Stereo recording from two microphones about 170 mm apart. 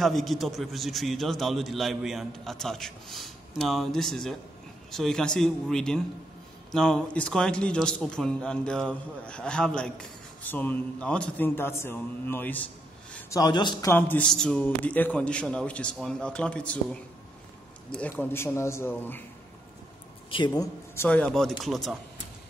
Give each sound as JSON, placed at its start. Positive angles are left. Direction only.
{"t": 0.0, "sound": "a man's voice", "side_deg": 0}
{"t": 13.3, "sound": "a man's voice", "side_deg": 25}
{"t": 20.2, "sound": "speech", "side_deg": 30}
{"t": 20.9, "sound": "a man's voice", "side_deg": 10}